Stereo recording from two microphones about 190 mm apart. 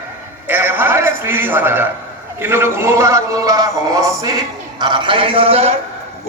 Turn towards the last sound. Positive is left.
turn(degrees=-30)  # may be behind; listen again after turning